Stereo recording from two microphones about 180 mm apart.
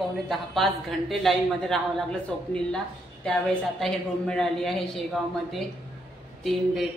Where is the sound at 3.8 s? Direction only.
5° left (ahead or behind).